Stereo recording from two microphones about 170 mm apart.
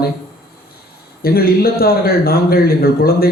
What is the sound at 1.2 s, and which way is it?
A man's voice, 65° left (ahead or behind).